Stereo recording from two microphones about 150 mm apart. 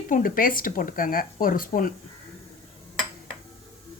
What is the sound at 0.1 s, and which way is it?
A woman's voice, 70° left (ahead or behind).